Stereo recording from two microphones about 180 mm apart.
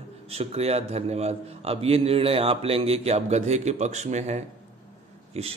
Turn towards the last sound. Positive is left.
turn(degrees=-35)  # may be behind; listen again after turning